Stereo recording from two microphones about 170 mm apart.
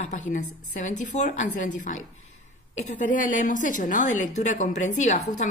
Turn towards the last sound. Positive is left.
turn(degrees=45)  # may be behind; listen again after turning